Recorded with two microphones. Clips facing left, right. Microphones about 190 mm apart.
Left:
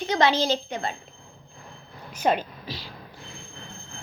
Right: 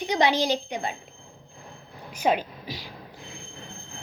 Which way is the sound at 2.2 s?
10° right (ahead or behind).